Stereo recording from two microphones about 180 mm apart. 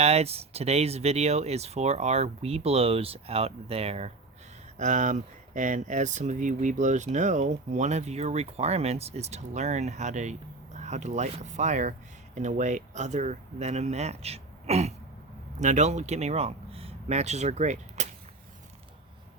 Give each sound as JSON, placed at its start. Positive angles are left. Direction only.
{"t": 0.0, "sound": "speech", "side_deg": -35}